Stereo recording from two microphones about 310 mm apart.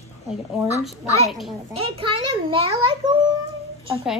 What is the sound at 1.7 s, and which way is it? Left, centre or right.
A child's voice, centre.